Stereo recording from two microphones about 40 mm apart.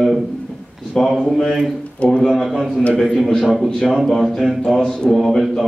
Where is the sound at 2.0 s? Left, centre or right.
Left.